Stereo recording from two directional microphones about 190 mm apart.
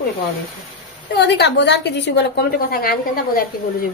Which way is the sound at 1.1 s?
65° left (ahead or behind).